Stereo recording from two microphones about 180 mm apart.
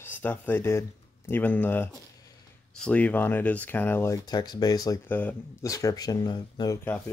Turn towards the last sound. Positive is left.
turn(degrees=25)  # may be behind; listen again after turning